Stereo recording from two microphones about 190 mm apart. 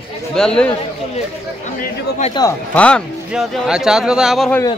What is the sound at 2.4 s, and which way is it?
Speech, 20° left (ahead or behind).